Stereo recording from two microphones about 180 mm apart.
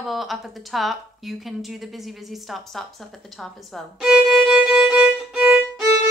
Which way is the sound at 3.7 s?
5° right (ahead or behind).